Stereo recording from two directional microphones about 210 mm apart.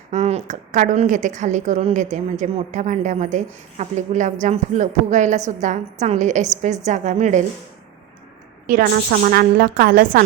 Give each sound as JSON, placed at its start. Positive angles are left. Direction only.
{"t": 0.1, "sound": "a woman's voice", "side_deg": -30}
{"t": 8.6, "sound": "a woman's voice", "side_deg": -45}